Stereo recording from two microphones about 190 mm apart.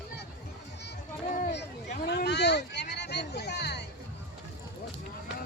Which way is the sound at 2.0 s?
60° left (ahead or behind).